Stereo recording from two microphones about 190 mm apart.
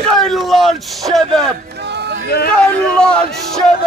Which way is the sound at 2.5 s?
5° left (ahead or behind).